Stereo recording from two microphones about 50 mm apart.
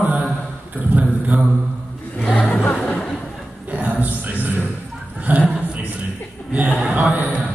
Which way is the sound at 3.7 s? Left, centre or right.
Right.